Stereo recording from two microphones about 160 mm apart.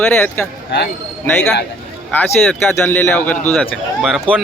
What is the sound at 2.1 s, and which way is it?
A man's voice, 10° left (ahead or behind).